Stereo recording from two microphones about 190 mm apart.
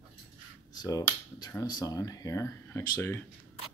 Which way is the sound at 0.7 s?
20° left (ahead or behind).